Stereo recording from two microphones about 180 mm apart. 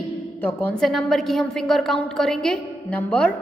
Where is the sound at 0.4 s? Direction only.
10° left (ahead or behind).